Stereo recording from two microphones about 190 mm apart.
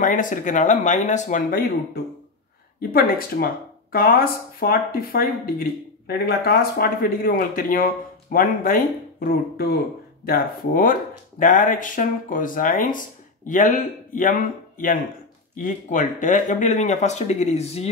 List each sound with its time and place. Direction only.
0.0 s speech: 45° left (ahead or behind)
2.8 s speech: 50° left (ahead or behind); by 17.8 s 35° left (ahead or behind)